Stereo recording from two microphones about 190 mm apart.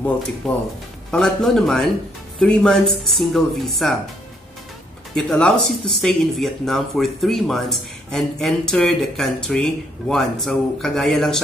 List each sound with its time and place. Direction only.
0.4 s speech: centre (ahead or behind)
5.1 s speech: 5° left (ahead or behind)